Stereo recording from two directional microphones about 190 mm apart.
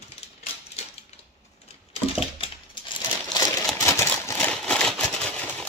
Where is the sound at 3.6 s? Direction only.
15° left (ahead or behind).